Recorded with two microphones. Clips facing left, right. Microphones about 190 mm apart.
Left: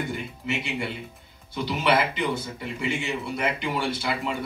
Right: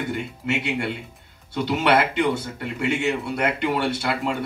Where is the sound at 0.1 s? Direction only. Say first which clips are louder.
Right 4 dB; 70° right (ahead or behind).